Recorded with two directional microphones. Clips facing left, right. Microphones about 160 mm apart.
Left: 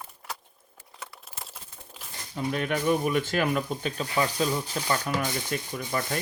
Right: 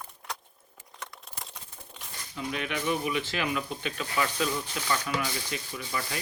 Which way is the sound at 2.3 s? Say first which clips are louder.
Left 5 dB; 45° left (ahead or behind).